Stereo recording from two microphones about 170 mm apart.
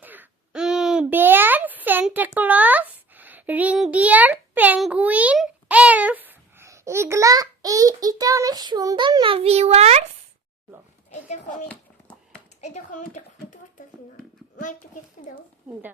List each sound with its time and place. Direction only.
0.0 s a child's voice: 10° right (ahead or behind); by 10.0 s 40° right (ahead or behind)
11.1 s a child's voice: 45° left (ahead or behind)
12.6 s a sound: 45° left (ahead or behind)
14.6 s a child's voice: 50° left (ahead or behind)